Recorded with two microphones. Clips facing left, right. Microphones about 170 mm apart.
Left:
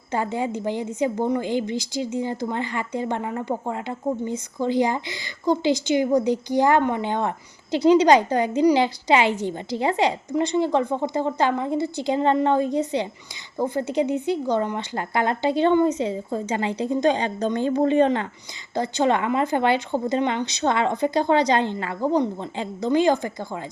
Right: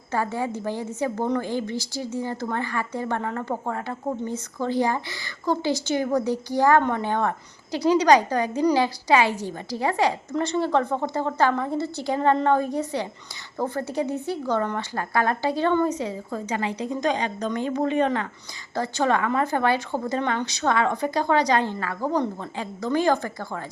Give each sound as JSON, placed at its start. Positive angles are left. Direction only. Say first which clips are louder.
{"t": 0.1, "sound": "a woman's voice", "louder": "left 1 dB", "side_deg": 20}